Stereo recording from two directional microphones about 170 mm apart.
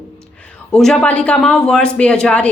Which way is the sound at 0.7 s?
5° left (ahead or behind).